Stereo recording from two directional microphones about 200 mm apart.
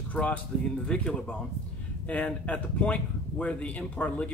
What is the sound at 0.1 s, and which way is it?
Speech, 5° left (ahead or behind).